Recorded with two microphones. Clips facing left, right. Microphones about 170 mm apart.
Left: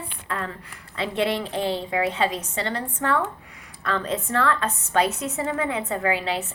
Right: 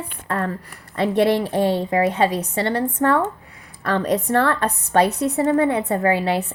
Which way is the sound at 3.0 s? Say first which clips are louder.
Right 5 dB; 50° right (ahead or behind).